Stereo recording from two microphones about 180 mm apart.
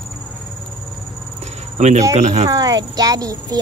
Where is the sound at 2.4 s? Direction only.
20° right (ahead or behind).